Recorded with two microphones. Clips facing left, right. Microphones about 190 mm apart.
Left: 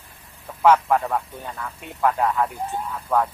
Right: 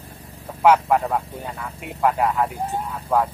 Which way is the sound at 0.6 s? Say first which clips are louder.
Right 1 dB; 10° right (ahead or behind).